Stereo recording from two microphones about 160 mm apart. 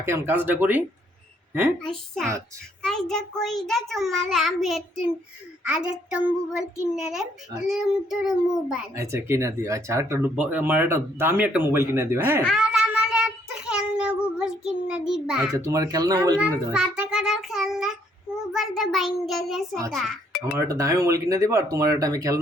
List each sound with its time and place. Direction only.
0.0 s speech: 15° right (ahead or behind)
1.8 s a child's voice: 5° left (ahead or behind)
9.0 s speech: 20° right (ahead or behind)
12.4 s child singing: centre (ahead or behind)
15.5 s speech: 20° right (ahead or behind)
16.7 s a child's voice: 5° right (ahead or behind)
20.7 s speech: 20° right (ahead or behind)